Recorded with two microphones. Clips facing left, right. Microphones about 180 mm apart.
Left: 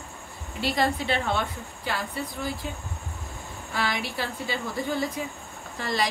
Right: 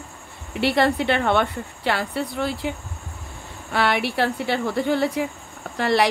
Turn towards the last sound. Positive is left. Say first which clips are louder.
# right 8 dB
turn(degrees=-70)  # may be behind; listen again after turning